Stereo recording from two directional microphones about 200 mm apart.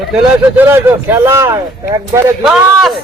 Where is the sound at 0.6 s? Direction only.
10° right (ahead or behind).